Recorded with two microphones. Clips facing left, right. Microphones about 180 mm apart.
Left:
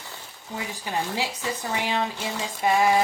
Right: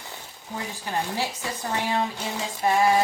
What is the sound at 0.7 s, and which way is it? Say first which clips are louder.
Speech: even; 15° left (ahead or behind).